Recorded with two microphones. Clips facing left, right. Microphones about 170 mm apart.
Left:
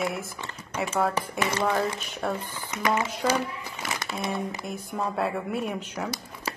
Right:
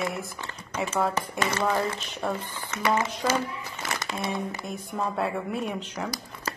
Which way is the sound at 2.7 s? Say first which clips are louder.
Right 1 dB; 15° left (ahead or behind).